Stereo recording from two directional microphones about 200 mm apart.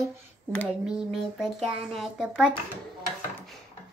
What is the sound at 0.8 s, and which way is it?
A woman's voice, centre (ahead or behind).